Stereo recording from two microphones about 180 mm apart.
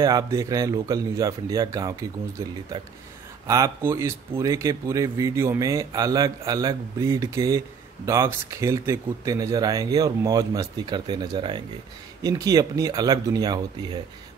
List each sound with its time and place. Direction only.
0.0 s speech: 20° right (ahead or behind)
3.4 s speech: 20° right (ahead or behind)